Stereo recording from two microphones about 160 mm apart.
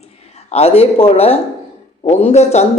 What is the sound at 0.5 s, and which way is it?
A man's voice, 40° left (ahead or behind).